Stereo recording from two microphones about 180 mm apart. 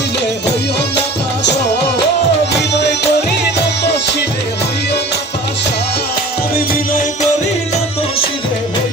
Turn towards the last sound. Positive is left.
turn(degrees=55)  # may be behind; listen again after turning